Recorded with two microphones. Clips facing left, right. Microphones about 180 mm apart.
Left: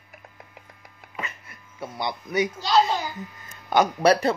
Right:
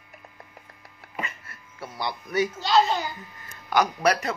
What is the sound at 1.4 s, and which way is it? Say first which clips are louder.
Speech: left 3 dB; 20° left (ahead or behind).